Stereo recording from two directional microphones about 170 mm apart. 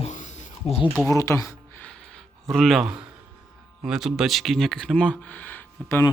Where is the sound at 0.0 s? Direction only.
45° left (ahead or behind).